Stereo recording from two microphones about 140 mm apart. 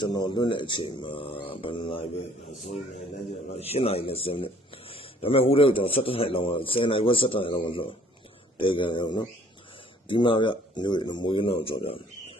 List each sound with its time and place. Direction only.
0.0 s speech: 35° left (ahead or behind)
2.6 s speech: 55° left (ahead or behind)